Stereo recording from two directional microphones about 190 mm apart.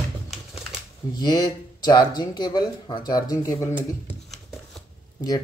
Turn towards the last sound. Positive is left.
turn(degrees=20)  # may be behind; listen again after turning